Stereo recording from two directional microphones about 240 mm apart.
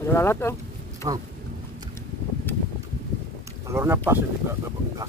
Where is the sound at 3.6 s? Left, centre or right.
Centre.